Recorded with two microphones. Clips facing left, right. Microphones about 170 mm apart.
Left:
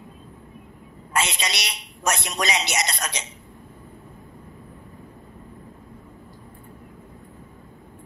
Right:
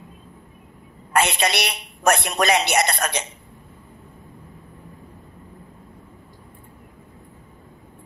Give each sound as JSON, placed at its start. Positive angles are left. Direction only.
{"t": 1.1, "sound": "a woman's voice", "side_deg": -55}